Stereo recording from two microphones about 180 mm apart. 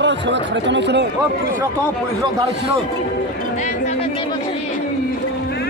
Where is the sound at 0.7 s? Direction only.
70° right (ahead or behind).